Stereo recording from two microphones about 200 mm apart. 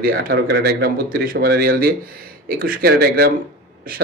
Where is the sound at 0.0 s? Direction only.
50° right (ahead or behind).